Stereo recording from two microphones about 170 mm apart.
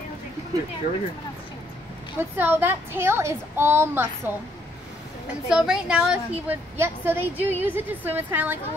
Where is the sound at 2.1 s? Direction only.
10° right (ahead or behind).